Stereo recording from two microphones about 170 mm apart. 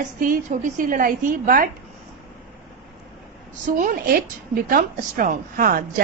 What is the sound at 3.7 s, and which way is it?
A woman's voice, 50° right (ahead or behind).